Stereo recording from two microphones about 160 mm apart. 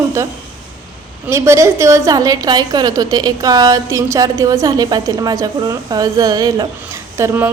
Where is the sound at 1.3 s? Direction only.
20° right (ahead or behind).